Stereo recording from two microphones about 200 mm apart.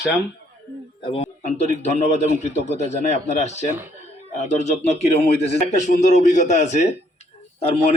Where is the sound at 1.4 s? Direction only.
35° left (ahead or behind).